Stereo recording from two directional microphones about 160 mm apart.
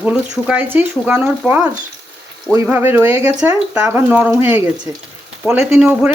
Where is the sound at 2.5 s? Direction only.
15° right (ahead or behind).